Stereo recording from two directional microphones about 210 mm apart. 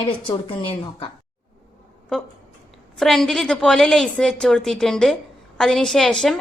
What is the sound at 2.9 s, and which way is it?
A woman's voice, centre (ahead or behind).